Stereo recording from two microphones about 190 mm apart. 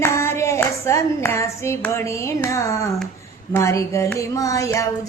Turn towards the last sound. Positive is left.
turn(degrees=15)  # may be behind; listen again after turning